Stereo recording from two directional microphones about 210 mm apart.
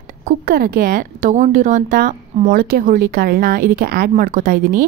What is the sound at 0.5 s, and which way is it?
A woman's voice, 45° right (ahead or behind).